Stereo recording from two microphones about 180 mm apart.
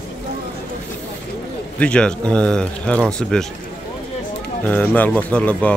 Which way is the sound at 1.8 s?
5° left (ahead or behind).